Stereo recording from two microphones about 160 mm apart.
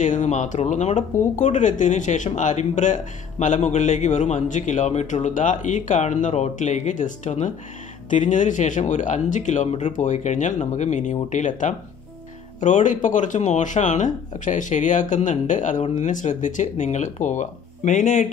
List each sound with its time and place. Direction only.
0.0 s speech: 50° left (ahead or behind)